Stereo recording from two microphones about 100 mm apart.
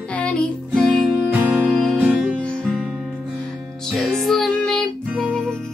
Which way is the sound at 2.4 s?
10° left (ahead or behind).